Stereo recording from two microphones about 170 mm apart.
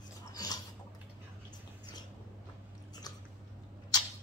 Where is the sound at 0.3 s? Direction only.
20° left (ahead or behind).